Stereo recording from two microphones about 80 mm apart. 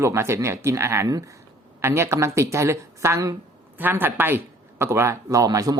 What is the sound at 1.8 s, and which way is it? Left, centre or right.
Speech, right.